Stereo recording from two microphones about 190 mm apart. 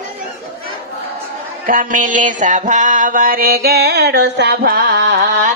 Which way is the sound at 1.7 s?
45° right (ahead or behind).